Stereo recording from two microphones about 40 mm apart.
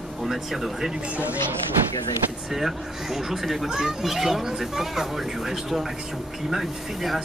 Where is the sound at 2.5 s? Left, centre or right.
Centre.